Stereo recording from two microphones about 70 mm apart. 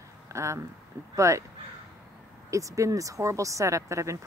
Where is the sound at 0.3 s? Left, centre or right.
Right.